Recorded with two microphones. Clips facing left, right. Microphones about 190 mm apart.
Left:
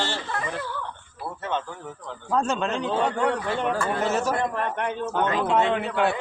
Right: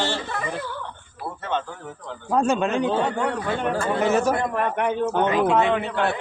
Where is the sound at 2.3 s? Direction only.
10° right (ahead or behind).